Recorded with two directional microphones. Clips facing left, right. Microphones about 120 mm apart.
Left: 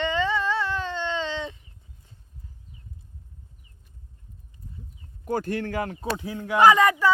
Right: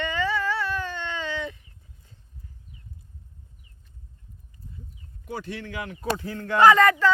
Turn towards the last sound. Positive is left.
turn(degrees=10)  # may be behind; listen again after turning